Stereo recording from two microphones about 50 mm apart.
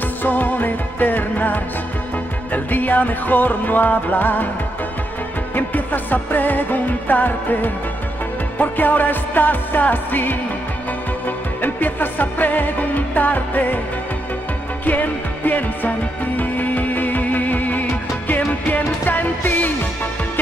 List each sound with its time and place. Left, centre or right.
0.2 s music: left
5.5 s music: left
14.9 s music: left